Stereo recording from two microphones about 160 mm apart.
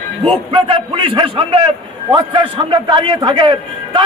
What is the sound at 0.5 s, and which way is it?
A man's voice, 30° right (ahead or behind).